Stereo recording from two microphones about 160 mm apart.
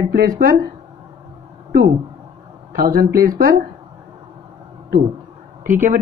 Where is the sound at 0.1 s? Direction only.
65° right (ahead or behind).